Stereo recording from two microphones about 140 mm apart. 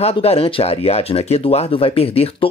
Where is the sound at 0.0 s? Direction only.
45° left (ahead or behind).